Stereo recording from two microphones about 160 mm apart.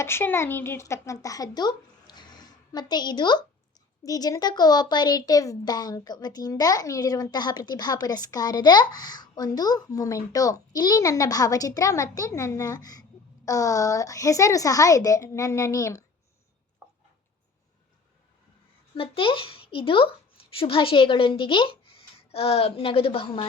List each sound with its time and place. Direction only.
0.0 s speech: 15° left (ahead or behind)
18.9 s a woman's voice: 35° left (ahead or behind)